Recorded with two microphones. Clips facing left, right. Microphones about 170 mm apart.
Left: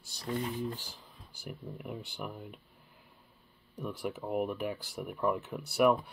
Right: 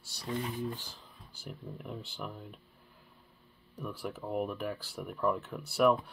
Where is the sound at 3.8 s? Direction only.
20° left (ahead or behind).